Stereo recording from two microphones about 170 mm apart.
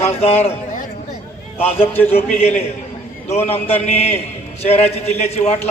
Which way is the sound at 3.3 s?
40° left (ahead or behind).